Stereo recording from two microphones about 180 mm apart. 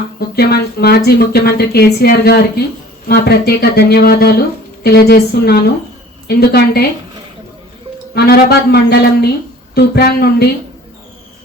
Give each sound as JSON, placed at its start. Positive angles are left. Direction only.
{"t": 0.3, "sound": "speech", "side_deg": 60}
{"t": 8.1, "sound": "speech", "side_deg": 60}